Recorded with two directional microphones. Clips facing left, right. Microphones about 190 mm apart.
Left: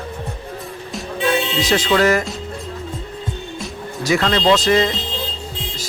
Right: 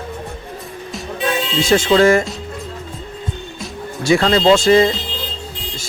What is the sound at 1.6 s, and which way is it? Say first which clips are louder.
Speech: right 7 dB; 25° right (ahead or behind).